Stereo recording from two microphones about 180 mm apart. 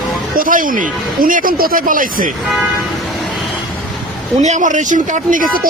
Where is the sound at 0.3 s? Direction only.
50° right (ahead or behind).